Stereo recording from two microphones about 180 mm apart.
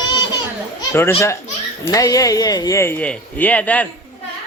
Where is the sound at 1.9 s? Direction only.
20° left (ahead or behind).